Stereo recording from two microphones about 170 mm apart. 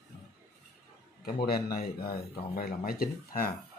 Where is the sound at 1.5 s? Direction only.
65° left (ahead or behind).